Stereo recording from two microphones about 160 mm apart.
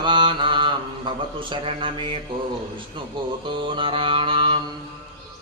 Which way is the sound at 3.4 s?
30° right (ahead or behind).